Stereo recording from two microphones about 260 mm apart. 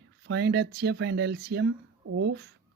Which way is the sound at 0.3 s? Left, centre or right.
Right.